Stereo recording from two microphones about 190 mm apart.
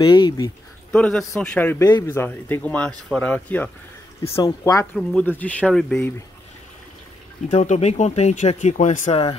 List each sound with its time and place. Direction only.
0.0 s speech: 25° left (ahead or behind)
0.9 s speech: 5° left (ahead or behind)
4.2 s speech: 20° left (ahead or behind)
4.9 s speech: 5° left (ahead or behind)
7.4 s speech: 40° left (ahead or behind)